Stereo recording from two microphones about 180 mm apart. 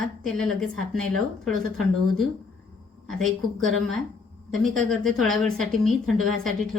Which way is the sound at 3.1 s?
Centre (ahead or behind).